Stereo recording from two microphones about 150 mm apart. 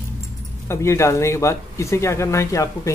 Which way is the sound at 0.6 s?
20° left (ahead or behind).